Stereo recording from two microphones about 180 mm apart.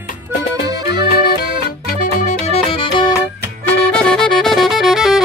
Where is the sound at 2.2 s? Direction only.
35° left (ahead or behind).